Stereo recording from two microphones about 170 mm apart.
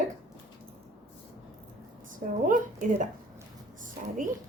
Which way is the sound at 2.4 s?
50° right (ahead or behind).